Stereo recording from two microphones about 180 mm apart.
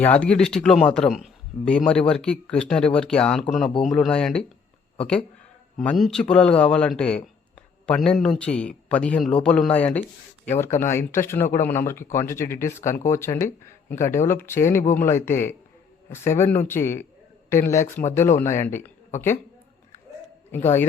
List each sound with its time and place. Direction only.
0.0 s speech: 5° left (ahead or behind)
20.5 s speech: 10° left (ahead or behind)